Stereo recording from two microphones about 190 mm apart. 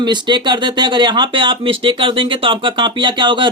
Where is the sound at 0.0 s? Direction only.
25° right (ahead or behind).